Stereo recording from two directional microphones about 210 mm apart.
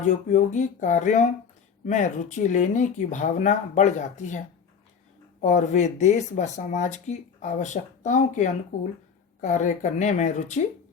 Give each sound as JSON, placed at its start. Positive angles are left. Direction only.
{"t": 0.0, "sound": "speech", "side_deg": 35}